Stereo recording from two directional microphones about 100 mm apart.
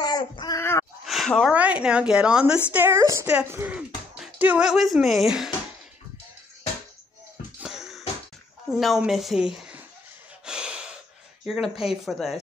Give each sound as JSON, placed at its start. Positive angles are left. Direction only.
{"t": 0.0, "sound": "child singing", "side_deg": 45}
{"t": 0.6, "sound": "a sound", "side_deg": 25}
{"t": 1.0, "sound": "a sound", "side_deg": 0}
{"t": 1.5, "sound": "speech", "side_deg": -15}
{"t": 3.0, "sound": "speech", "side_deg": -30}
{"t": 3.7, "sound": "speech", "side_deg": -15}
{"t": 7.6, "sound": "music", "side_deg": -5}
{"t": 8.6, "sound": "a woman's voice", "side_deg": -5}
{"t": 10.4, "sound": "gasp", "side_deg": -10}
{"t": 11.4, "sound": "a woman's voice", "side_deg": 0}